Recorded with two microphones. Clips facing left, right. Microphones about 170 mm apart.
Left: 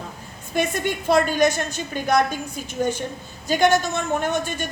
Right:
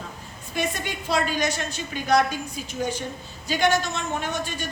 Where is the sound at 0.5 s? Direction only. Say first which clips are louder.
Left 5 dB; 50° left (ahead or behind).